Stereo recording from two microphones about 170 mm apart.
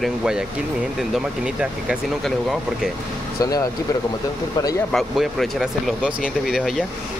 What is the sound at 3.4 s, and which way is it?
Speech, 20° left (ahead or behind).